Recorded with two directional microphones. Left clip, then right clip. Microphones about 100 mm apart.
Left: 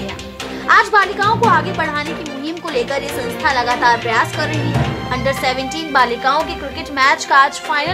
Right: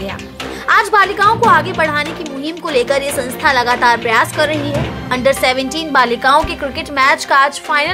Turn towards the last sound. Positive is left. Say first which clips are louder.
# right 2 dB
turn(degrees=-25)  # may be behind; listen again after turning